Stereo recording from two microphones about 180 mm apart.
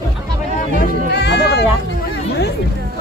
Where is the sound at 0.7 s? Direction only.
70° left (ahead or behind).